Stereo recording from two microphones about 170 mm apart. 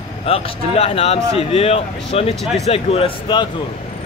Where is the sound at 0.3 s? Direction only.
35° left (ahead or behind).